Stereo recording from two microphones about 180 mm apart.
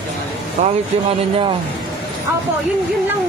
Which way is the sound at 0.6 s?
40° right (ahead or behind).